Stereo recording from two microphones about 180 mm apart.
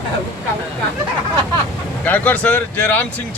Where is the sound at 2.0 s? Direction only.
10° left (ahead or behind).